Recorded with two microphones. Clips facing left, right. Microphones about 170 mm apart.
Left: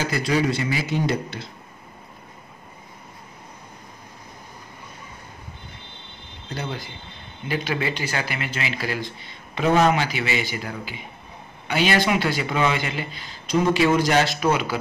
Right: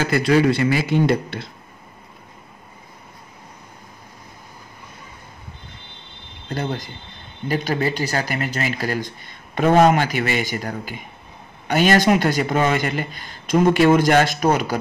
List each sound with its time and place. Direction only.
0.0 s a man's voice: 55° right (ahead or behind)
6.5 s speech: 45° right (ahead or behind)